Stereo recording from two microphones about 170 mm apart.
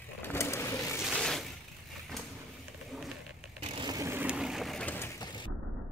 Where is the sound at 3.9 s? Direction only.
15° right (ahead or behind); by 5.1 s 10° left (ahead or behind).